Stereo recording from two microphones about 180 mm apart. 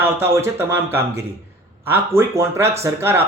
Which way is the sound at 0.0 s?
10° right (ahead or behind).